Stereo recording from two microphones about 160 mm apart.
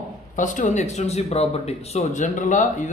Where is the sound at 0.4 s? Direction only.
50° left (ahead or behind).